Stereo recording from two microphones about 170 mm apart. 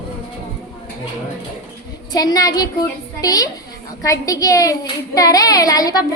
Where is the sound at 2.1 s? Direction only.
20° left (ahead or behind).